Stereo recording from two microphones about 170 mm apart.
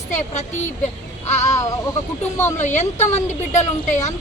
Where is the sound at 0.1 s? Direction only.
45° left (ahead or behind).